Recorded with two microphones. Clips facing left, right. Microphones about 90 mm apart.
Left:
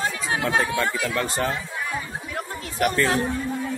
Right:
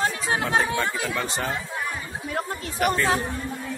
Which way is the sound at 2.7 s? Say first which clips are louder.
Left 1 dB; 10° right (ahead or behind).